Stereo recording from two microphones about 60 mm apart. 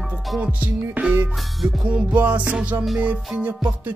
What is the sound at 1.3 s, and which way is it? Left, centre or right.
Music, centre.